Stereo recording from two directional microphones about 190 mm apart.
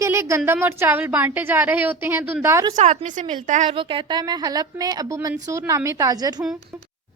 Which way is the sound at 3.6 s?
25° right (ahead or behind).